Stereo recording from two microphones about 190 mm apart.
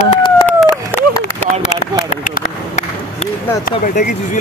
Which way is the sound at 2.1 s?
40° left (ahead or behind).